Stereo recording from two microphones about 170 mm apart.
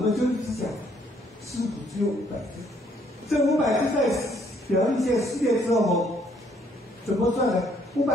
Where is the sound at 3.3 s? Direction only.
Centre (ahead or behind).